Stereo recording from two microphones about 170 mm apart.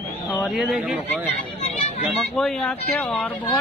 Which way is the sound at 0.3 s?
5° right (ahead or behind).